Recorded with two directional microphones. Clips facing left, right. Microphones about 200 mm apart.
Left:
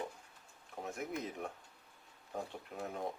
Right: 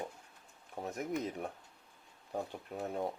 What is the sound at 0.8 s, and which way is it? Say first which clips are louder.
Speech: right 4 dB; 35° right (ahead or behind).